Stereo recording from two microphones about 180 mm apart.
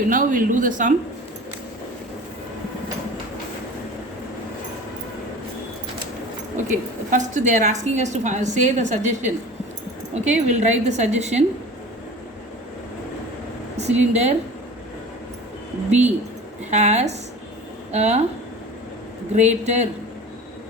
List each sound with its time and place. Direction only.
0.1 s speech: 50° right (ahead or behind)
7.1 s a woman's voice: 45° right (ahead or behind)
13.7 s speech: 40° right (ahead or behind)
15.9 s a woman's voice: 40° right (ahead or behind)
19.4 s a woman's voice: 40° right (ahead or behind)